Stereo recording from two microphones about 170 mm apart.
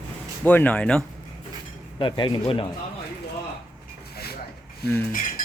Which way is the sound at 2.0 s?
30° left (ahead or behind).